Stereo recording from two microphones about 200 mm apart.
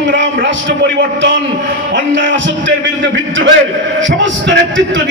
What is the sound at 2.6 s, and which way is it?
A man's voice, 65° right (ahead or behind).